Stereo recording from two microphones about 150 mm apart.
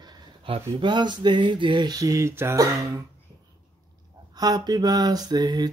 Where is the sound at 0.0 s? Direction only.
35° right (ahead or behind).